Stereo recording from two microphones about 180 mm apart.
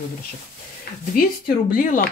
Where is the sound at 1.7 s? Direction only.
50° left (ahead or behind).